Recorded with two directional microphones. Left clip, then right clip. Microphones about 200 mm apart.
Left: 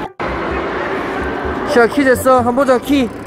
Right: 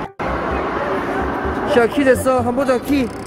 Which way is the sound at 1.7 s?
20° left (ahead or behind).